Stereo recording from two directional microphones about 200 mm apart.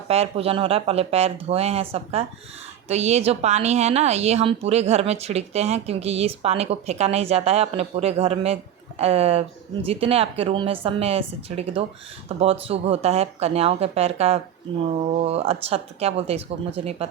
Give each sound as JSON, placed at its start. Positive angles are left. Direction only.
{"t": 0.1, "sound": "a woman's voice", "side_deg": -30}